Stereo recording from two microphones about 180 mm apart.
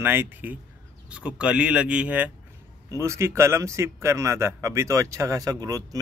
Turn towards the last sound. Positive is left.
turn(degrees=-20)  # may be behind; listen again after turning